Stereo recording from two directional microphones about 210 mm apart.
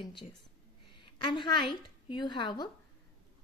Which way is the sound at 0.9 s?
25° left (ahead or behind).